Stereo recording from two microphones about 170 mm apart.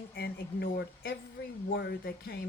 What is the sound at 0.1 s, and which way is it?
Speech, 65° left (ahead or behind).